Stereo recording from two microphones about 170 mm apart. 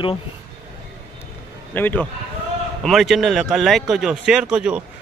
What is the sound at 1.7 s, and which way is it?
Speech, 10° left (ahead or behind).